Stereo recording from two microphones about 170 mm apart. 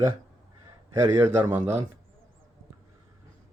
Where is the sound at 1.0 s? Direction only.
10° right (ahead or behind).